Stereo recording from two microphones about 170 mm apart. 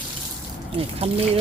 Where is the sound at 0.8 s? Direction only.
35° right (ahead or behind).